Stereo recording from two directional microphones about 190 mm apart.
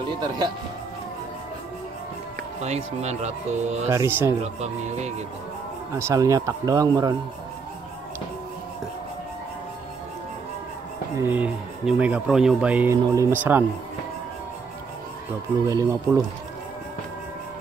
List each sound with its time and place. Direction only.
2.6 s speech: 35° right (ahead or behind)
3.9 s speech: 15° right (ahead or behind)
4.4 s speech: 35° right (ahead or behind)
5.9 s speech: 15° right (ahead or behind)
11.1 s speech: 10° right (ahead or behind)
15.6 s speech: 15° right (ahead or behind)